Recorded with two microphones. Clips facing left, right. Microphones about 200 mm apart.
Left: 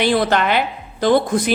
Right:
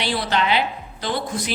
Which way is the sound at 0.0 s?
50° left (ahead or behind).